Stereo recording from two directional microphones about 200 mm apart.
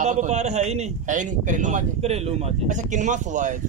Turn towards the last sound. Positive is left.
turn(degrees=-40)  # may be behind; listen again after turning